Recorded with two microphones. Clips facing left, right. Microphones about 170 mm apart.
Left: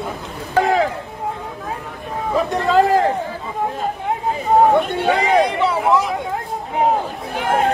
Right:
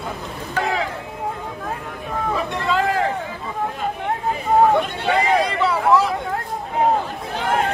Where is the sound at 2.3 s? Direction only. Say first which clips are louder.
Left 8 dB; 40° left (ahead or behind).